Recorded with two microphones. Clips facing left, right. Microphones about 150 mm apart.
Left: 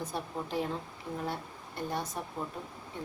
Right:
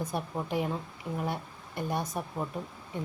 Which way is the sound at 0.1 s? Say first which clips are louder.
Right 3 dB; 15° right (ahead or behind).